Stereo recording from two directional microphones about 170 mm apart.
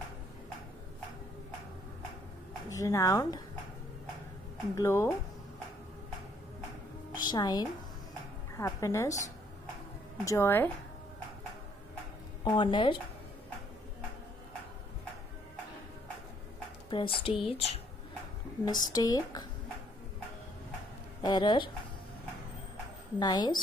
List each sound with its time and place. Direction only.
2.7 s speech: 20° left (ahead or behind)
4.7 s a woman's voice: 15° left (ahead or behind)
7.2 s a woman's voice: 25° left (ahead or behind)
12.4 s speech: 30° left (ahead or behind)
16.9 s speech: 30° left (ahead or behind)
18.7 s speech: 25° left (ahead or behind)
21.2 s speech: 25° left (ahead or behind)
23.1 s speech: 25° left (ahead or behind)